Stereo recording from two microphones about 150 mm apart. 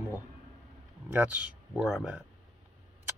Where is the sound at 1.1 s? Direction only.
10° right (ahead or behind).